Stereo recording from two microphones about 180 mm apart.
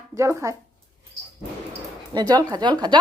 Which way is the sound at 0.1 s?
15° right (ahead or behind).